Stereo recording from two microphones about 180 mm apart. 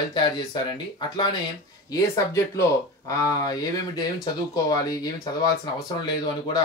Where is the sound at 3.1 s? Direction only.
20° left (ahead or behind).